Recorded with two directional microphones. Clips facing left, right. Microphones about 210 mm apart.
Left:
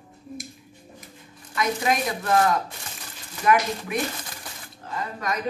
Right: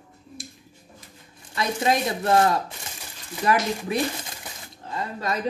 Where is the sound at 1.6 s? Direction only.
30° right (ahead or behind).